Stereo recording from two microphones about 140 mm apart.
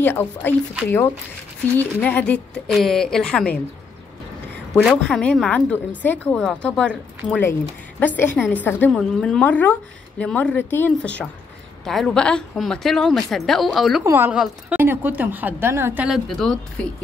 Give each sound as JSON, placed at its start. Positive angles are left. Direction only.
{"t": 0.0, "sound": "a woman's voice", "side_deg": 15}
{"t": 4.8, "sound": "a woman's voice", "side_deg": 5}
{"t": 11.8, "sound": "a woman's voice", "side_deg": 0}
{"t": 14.0, "sound": "a woman's voice", "side_deg": -15}
{"t": 14.3, "sound": "a woman's voice", "side_deg": -5}